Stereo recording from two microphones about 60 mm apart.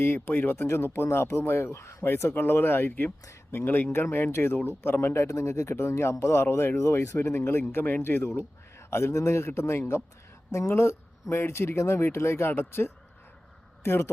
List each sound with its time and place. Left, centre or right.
0.0 s speech: left
2.3 s speech: left